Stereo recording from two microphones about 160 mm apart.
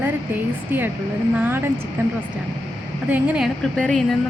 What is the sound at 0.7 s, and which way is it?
Speech, 10° right (ahead or behind).